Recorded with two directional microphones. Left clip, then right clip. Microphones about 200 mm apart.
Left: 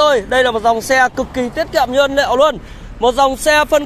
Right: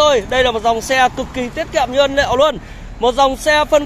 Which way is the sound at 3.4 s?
30° left (ahead or behind).